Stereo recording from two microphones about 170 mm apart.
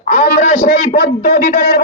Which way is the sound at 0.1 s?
50° left (ahead or behind).